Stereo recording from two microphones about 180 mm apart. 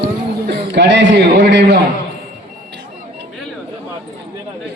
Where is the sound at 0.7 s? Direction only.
90° right.